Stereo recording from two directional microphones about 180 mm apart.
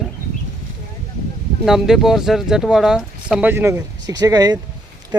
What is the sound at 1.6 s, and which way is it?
Speech, 5° right (ahead or behind).